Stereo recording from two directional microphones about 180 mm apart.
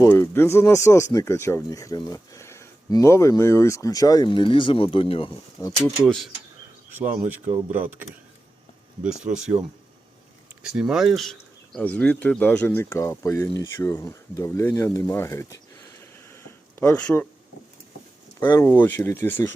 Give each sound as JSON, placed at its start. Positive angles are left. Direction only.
{"t": 0.0, "sound": "speech", "side_deg": 15}
{"t": 5.6, "sound": "speech", "side_deg": 20}
{"t": 6.1, "sound": "speech", "side_deg": 0}
{"t": 6.9, "sound": "speech", "side_deg": -10}
{"t": 9.2, "sound": "speech", "side_deg": -5}
{"t": 16.3, "sound": "a sound", "side_deg": 10}
{"t": 18.3, "sound": "speech", "side_deg": 10}